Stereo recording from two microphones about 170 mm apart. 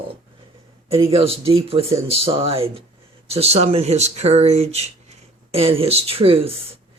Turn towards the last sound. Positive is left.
turn(degrees=-35)  # may be behind; listen again after turning